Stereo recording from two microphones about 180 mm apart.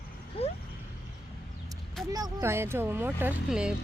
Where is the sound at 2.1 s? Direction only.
15° right (ahead or behind).